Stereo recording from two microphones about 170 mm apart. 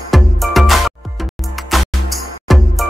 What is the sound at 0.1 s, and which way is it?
Music, centre (ahead or behind).